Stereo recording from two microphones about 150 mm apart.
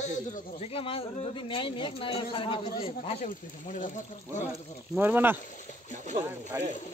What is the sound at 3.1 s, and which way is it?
Speech, 50° left (ahead or behind).